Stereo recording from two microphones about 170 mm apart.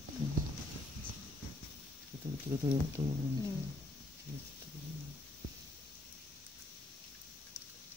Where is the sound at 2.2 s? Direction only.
15° right (ahead or behind).